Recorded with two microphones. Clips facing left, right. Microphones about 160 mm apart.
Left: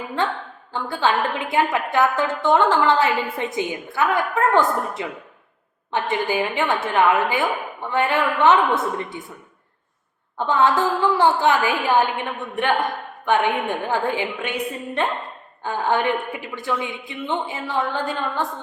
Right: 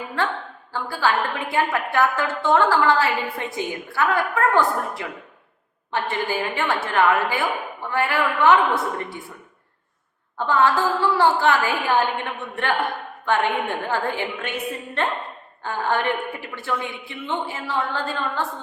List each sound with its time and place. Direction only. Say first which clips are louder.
0.7 s a woman's voice: left 1 dB; 20° left (ahead or behind)
10.3 s a woman's voice: left 1 dB; 20° left (ahead or behind)